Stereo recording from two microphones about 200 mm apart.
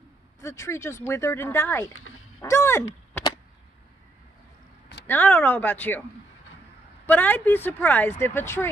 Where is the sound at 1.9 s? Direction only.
90° left.